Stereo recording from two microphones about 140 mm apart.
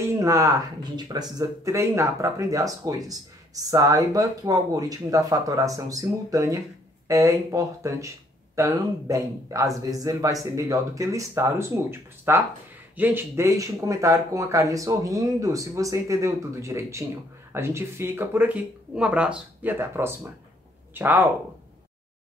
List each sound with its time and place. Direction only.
0.1 s speech: 25° right (ahead or behind)